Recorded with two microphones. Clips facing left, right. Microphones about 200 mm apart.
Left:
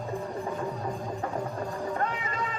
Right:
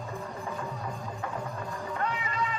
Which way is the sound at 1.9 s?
45° left (ahead or behind).